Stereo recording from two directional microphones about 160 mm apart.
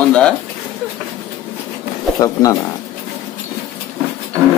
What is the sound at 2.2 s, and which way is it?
Speech, 20° left (ahead or behind).